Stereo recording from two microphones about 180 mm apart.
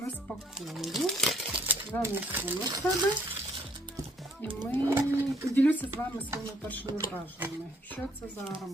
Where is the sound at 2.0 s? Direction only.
10° right (ahead or behind).